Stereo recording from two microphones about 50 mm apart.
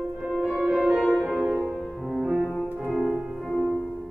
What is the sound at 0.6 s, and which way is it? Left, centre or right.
Music, centre.